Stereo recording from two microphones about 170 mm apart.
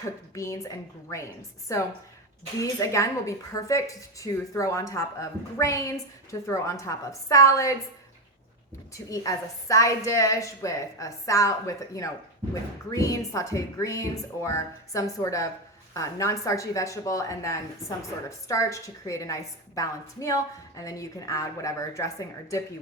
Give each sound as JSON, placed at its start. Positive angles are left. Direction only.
{"t": 0.3, "sound": "a woman's voice", "side_deg": 20}
{"t": 9.0, "sound": "a woman's voice", "side_deg": 20}